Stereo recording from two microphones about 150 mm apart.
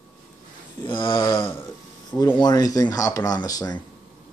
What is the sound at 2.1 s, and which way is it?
Speech, 20° left (ahead or behind).